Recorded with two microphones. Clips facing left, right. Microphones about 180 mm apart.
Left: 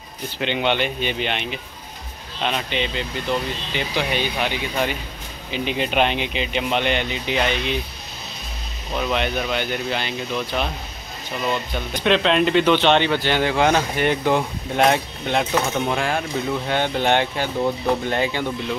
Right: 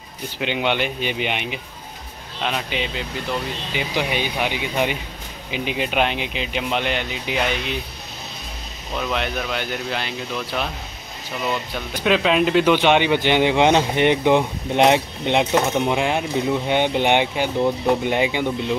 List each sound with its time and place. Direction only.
0.4 s speech: 5° right (ahead or behind)
3.9 s speech: 15° right (ahead or behind)
8.9 s speech: centre (ahead or behind); by 18.8 s 15° right (ahead or behind)